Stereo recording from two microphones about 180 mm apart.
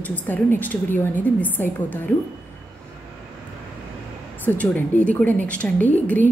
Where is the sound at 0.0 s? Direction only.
10° left (ahead or behind).